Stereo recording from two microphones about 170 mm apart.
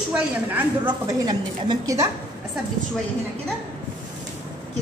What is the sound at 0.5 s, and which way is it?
Speech, 10° right (ahead or behind).